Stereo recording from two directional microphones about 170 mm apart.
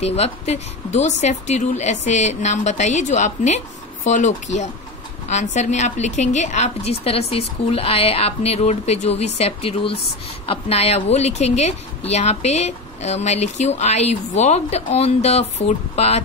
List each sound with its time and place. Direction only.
0.0 s a woman's voice: 40° left (ahead or behind)